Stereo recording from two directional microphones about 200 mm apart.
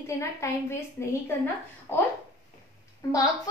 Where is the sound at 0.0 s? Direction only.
15° left (ahead or behind).